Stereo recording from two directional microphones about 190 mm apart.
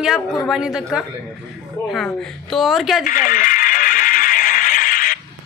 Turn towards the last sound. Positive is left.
turn(degrees=45)  # may be behind; listen again after turning